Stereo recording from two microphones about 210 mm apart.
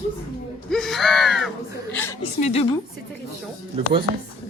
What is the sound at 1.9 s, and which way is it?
Speech, 10° left (ahead or behind).